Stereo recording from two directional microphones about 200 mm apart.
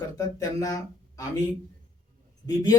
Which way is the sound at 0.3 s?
15° left (ahead or behind).